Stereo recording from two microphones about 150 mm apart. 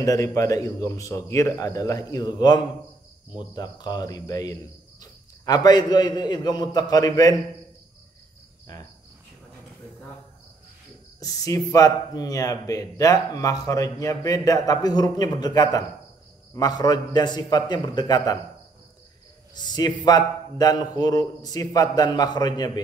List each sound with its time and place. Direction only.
0.0 s a man's voice: 20° left (ahead or behind)
8.7 s cricket: 25° left (ahead or behind)
11.1 s a man's voice: 25° left (ahead or behind)
19.5 s a man's voice: 25° left (ahead or behind)